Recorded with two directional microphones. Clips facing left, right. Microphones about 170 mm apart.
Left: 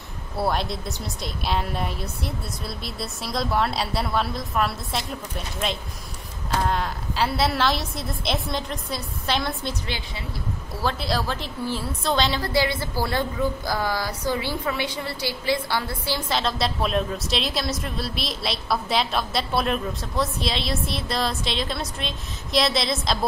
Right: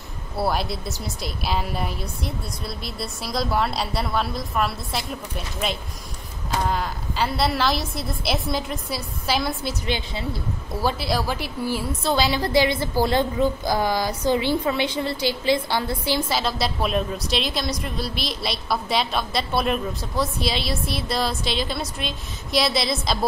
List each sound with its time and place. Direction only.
0.4 s a woman's voice: 5° right (ahead or behind)
6.6 s a woman's voice: centre (ahead or behind)
9.8 s a woman's voice: 20° right (ahead or behind)
12.4 s a woman's voice: 20° right (ahead or behind)
16.3 s a woman's voice: 5° right (ahead or behind)